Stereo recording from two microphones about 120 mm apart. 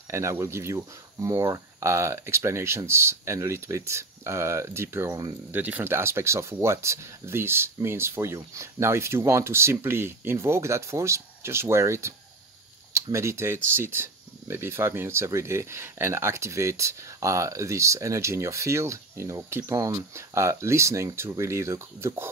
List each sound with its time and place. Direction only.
0.1 s speech: 25° right (ahead or behind)